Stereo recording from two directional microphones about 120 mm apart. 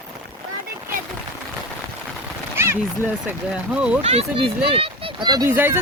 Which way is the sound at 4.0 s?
60° right (ahead or behind).